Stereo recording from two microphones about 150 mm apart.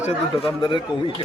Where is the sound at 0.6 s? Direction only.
30° left (ahead or behind).